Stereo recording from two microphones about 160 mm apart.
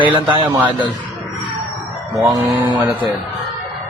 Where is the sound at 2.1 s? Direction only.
Centre (ahead or behind).